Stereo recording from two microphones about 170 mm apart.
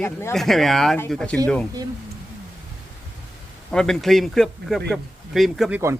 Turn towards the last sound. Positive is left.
turn(degrees=0)  # may be behind; listen again after turning